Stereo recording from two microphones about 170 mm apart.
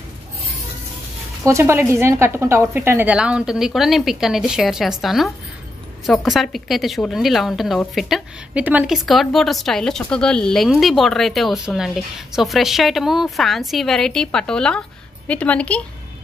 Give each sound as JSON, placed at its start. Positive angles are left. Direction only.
{"t": 1.4, "sound": "a woman's voice", "side_deg": -15}